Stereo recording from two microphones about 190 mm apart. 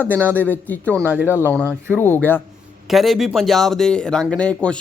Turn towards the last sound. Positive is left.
turn(degrees=5)  # may be behind; listen again after turning